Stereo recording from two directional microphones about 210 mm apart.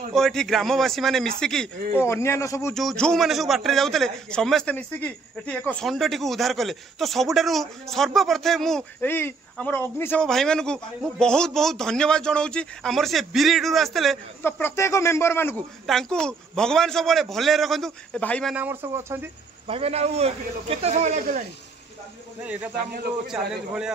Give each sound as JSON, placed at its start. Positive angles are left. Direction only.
{"t": 0.1, "sound": "a man's voice", "side_deg": 0}
{"t": 2.7, "sound": "a man's voice", "side_deg": 0}
{"t": 18.6, "sound": "speech", "side_deg": -10}
{"t": 19.7, "sound": "a man's voice", "side_deg": -30}
{"t": 22.4, "sound": "a man's voice", "side_deg": -5}